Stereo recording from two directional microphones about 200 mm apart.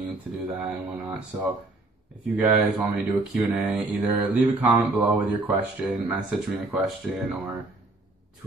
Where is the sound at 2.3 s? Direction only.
10° right (ahead or behind).